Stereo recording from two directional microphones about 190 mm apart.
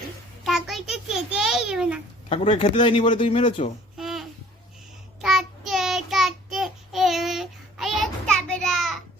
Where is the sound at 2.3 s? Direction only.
30° left (ahead or behind).